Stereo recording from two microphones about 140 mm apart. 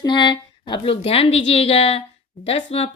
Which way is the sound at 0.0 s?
30° left (ahead or behind).